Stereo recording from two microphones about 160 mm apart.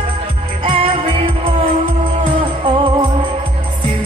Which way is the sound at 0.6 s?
35° right (ahead or behind).